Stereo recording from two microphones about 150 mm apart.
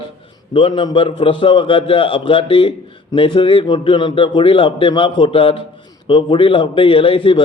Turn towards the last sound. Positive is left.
turn(degrees=35)  # may be behind; listen again after turning